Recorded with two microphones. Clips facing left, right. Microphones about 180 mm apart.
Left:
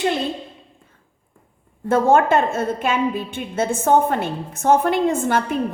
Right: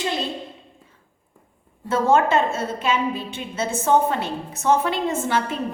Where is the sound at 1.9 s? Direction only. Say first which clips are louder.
Left 3 dB; 55° left (ahead or behind).